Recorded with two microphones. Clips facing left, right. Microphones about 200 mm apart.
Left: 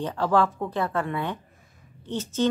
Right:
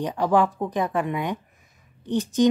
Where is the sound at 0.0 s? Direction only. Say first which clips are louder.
Right 2 dB; 15° right (ahead or behind).